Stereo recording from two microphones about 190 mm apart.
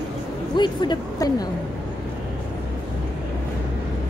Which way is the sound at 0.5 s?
25° left (ahead or behind).